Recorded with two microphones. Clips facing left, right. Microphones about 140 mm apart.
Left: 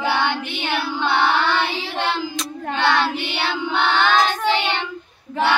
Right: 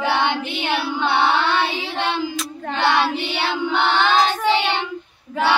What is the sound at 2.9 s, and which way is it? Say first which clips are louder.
Child singing: right 1 dB; 25° right (ahead or behind).